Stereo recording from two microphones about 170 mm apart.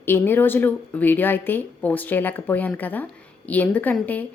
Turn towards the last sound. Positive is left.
turn(degrees=10)  # may be behind; listen again after turning